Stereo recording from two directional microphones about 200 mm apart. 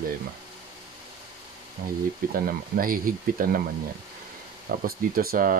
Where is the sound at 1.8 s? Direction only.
45° right (ahead or behind).